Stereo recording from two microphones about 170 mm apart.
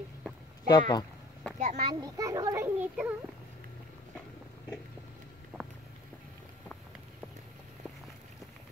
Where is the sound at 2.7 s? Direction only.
10° right (ahead or behind).